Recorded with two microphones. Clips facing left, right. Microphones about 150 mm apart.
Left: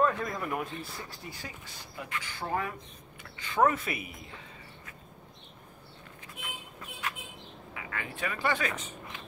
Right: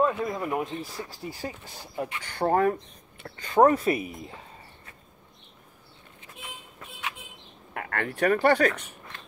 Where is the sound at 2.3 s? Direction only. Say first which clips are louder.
Right 11 dB; 50° right (ahead or behind).